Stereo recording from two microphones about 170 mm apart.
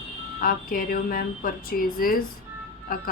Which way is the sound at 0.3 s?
55° left (ahead or behind).